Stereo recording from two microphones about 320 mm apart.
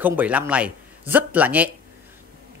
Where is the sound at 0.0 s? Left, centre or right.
Centre.